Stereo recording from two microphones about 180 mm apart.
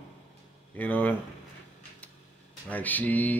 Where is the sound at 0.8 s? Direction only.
10° left (ahead or behind).